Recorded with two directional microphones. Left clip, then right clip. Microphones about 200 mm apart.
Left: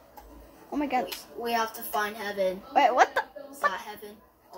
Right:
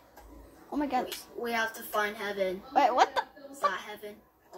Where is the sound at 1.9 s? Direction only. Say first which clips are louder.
Left 1 dB; 40° left (ahead or behind).